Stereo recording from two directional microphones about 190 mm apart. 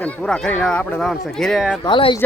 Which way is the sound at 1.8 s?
25° left (ahead or behind).